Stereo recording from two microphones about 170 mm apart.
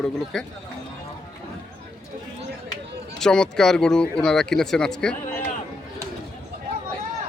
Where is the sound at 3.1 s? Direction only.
5° left (ahead or behind).